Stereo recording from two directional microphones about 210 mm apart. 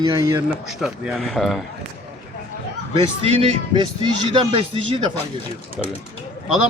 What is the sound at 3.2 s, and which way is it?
Speech, 25° right (ahead or behind).